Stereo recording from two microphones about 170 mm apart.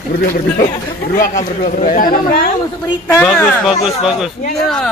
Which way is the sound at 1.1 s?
50° left (ahead or behind).